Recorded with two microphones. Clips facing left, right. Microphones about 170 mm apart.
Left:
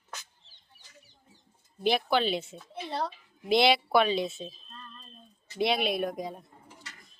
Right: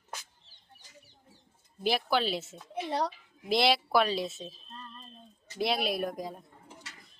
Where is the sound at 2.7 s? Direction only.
15° right (ahead or behind).